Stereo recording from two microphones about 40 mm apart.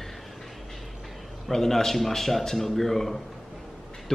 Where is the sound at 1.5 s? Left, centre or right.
Centre.